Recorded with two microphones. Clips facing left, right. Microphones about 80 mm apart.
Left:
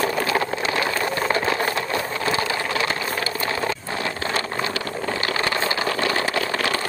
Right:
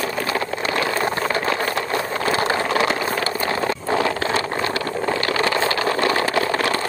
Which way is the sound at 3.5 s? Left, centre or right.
Centre.